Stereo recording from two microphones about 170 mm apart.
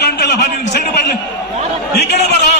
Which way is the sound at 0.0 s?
80° left.